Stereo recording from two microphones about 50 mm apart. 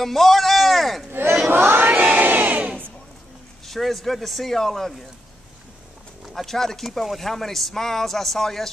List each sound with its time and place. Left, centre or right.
0.0 s a man's voice: centre
1.1 s crowd: right
1.5 s chant: right
3.6 s speech: centre
6.2 s speech: centre